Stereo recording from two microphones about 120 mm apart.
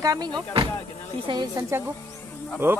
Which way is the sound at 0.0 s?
30° right (ahead or behind).